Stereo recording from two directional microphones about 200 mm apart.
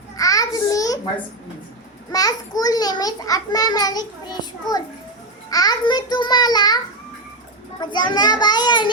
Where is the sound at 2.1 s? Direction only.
20° left (ahead or behind).